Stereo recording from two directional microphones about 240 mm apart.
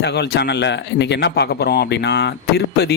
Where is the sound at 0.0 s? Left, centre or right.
Left.